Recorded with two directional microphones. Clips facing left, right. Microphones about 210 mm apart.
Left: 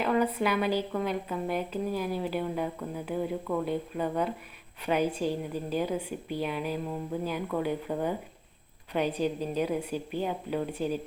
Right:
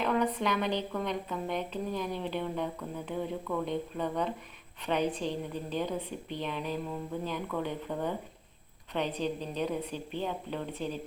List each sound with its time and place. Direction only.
0.0 s a woman's voice: 5° left (ahead or behind)